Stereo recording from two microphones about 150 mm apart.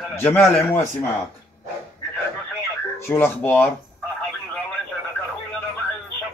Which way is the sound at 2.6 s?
15° left (ahead or behind).